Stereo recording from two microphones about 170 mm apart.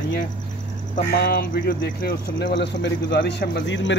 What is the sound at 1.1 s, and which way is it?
Speech, 60° left (ahead or behind).